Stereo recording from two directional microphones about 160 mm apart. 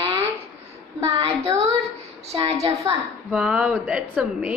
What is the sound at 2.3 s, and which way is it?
Speech, 40° right (ahead or behind).